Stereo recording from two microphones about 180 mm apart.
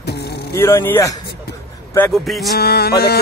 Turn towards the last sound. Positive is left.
turn(degrees=60)  # may be behind; listen again after turning